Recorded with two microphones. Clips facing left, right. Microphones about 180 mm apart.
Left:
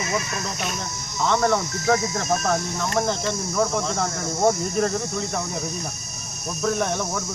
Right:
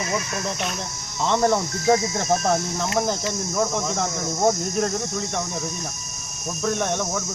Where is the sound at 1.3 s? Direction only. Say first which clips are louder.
Right 1 dB; 25° right (ahead or behind).